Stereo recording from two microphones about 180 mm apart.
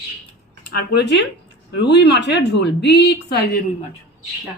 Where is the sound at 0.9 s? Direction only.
70° left (ahead or behind).